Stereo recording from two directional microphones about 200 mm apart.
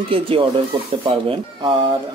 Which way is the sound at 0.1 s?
25° right (ahead or behind).